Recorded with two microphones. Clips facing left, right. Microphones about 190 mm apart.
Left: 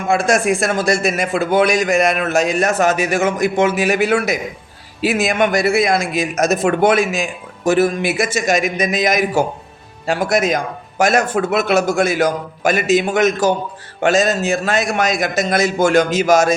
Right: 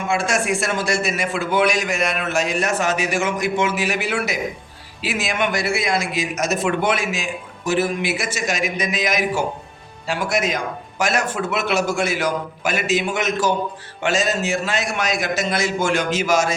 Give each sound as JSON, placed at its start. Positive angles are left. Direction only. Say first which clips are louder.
{"t": 0.6, "sound": "a man's voice", "louder": "left 5 dB", "side_deg": 40}